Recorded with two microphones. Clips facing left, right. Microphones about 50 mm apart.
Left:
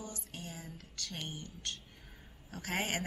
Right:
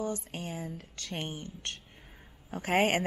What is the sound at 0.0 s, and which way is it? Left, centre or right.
A woman's voice, right.